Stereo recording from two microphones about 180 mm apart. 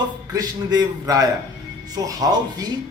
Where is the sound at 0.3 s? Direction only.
20° right (ahead or behind).